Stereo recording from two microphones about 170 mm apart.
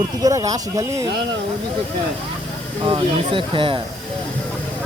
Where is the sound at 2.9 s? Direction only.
30° right (ahead or behind).